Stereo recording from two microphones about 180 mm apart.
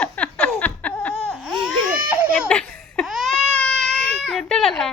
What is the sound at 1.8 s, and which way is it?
Crying, 50° right (ahead or behind).